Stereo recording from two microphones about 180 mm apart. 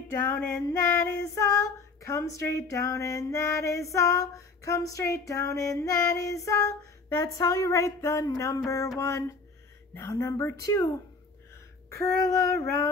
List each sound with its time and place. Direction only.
0.2 s female singing: 10° left (ahead or behind)
9.9 s speech: 20° left (ahead or behind)
10.6 s female singing: 20° left (ahead or behind)